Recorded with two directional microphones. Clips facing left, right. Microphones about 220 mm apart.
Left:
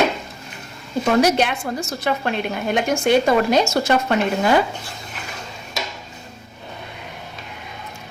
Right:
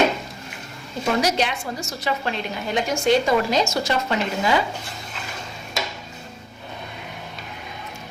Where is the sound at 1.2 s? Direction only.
55° left (ahead or behind).